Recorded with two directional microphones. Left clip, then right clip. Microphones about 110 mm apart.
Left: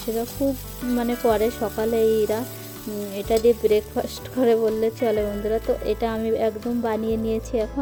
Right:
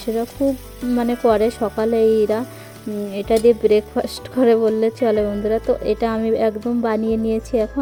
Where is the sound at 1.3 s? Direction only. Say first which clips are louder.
Right 5 dB; 45° right (ahead or behind).